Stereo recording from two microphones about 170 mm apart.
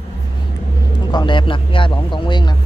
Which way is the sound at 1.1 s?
25° left (ahead or behind).